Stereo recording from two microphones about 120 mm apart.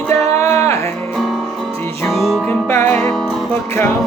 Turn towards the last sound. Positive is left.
turn(degrees=20)  # may be behind; listen again after turning